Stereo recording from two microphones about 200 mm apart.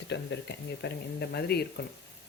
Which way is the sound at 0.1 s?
60° left (ahead or behind).